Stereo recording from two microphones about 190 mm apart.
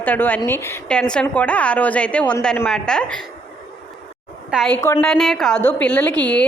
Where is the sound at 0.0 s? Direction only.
10° left (ahead or behind).